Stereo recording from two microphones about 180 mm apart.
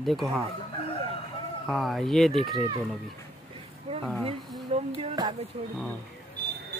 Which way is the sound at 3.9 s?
30° right (ahead or behind).